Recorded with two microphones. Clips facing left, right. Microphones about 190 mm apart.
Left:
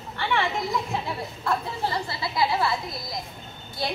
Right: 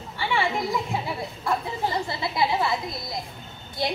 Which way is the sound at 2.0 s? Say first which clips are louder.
Right 1 dB; 20° right (ahead or behind).